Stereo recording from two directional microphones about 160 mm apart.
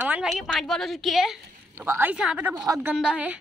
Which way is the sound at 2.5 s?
20° right (ahead or behind).